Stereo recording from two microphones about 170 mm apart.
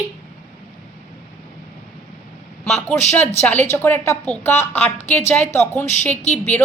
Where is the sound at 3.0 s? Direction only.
40° left (ahead or behind).